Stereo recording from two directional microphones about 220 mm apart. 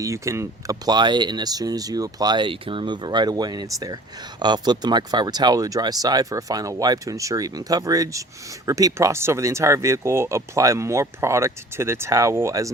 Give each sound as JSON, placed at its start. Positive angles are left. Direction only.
{"t": 0.0, "sound": "speech", "side_deg": -15}